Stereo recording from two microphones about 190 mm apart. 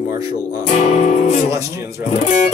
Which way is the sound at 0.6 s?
35° left (ahead or behind).